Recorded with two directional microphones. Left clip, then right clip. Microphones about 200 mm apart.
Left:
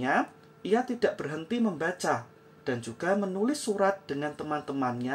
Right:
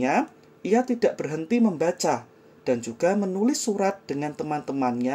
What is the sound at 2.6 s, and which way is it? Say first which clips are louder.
Speech: right 9 dB; 25° right (ahead or behind).